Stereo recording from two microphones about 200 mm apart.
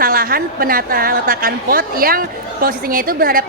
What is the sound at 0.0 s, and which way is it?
A woman's voice, 45° right (ahead or behind).